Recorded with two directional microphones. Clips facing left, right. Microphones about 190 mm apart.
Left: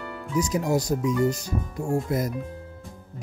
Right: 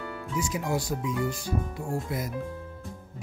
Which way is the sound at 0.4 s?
40° left (ahead or behind).